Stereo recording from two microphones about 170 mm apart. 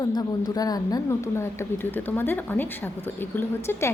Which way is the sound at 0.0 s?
25° left (ahead or behind).